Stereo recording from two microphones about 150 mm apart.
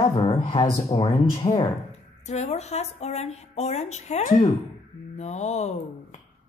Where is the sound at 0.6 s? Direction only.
40° left (ahead or behind).